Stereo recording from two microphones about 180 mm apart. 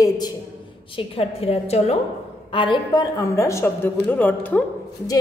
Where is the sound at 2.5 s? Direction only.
25° left (ahead or behind).